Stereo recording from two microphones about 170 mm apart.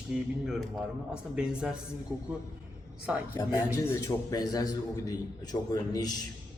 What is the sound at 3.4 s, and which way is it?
A man's voice, 15° left (ahead or behind).